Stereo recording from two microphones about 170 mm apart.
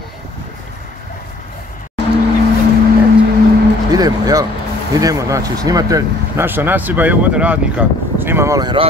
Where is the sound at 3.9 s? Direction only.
20° right (ahead or behind).